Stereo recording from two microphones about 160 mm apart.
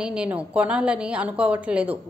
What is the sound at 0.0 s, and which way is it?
A woman's voice, 5° right (ahead or behind).